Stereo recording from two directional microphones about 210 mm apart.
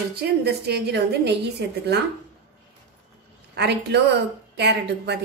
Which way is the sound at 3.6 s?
50° right (ahead or behind).